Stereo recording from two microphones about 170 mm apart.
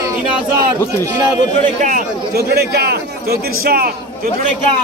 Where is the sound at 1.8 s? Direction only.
55° right (ahead or behind).